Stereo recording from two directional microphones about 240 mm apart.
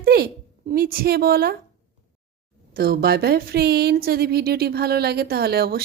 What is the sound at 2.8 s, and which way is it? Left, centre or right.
Speech, right.